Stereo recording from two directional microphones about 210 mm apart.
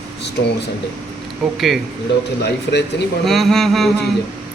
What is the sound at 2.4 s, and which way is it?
Speech, 55° left (ahead or behind).